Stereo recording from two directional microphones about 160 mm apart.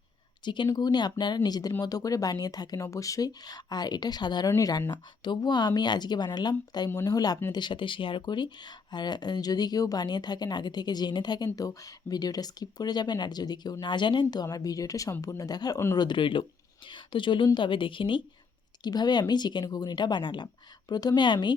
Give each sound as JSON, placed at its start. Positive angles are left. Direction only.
{"t": 0.4, "sound": "speech", "side_deg": 30}
{"t": 7.5, "sound": "speech", "side_deg": 30}
{"t": 16.0, "sound": "speech", "side_deg": 30}